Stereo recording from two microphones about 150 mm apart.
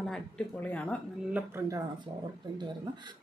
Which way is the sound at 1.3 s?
10° right (ahead or behind).